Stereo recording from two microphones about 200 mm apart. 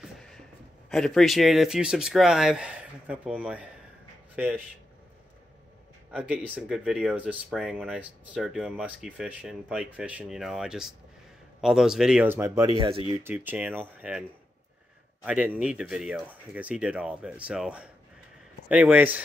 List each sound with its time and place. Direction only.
0.0 s a sound: centre (ahead or behind)
0.8 s speech: centre (ahead or behind)
6.1 s speech: 5° right (ahead or behind)
12.6 s speech: 25° right (ahead or behind)
13.1 s speech: 10° right (ahead or behind)
15.2 s speech: 5° right (ahead or behind)